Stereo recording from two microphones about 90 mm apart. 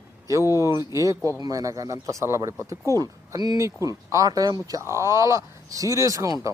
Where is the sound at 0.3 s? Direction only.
35° right (ahead or behind).